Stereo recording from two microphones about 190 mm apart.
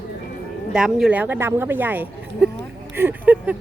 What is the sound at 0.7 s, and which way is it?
Speech, 5° right (ahead or behind).